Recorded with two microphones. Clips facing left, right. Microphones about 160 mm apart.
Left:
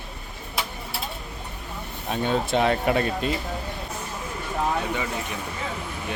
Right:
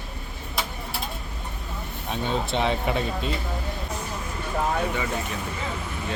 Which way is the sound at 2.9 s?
Centre (ahead or behind).